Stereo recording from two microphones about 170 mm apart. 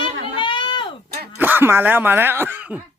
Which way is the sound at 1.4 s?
10° right (ahead or behind).